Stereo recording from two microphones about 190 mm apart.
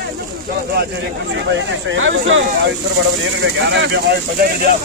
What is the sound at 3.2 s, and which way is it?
Speech, 70° right (ahead or behind).